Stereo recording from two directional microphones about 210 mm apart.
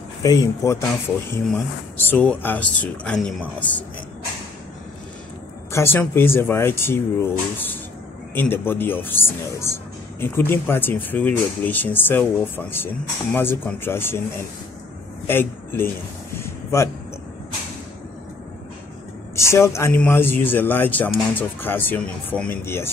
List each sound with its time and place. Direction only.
0.2 s speech: 15° left (ahead or behind)
5.7 s speech: 10° left (ahead or behind)
15.2 s a man's voice: 10° left (ahead or behind)
16.3 s a sound: 15° left (ahead or behind)
19.3 s speech: 15° left (ahead or behind)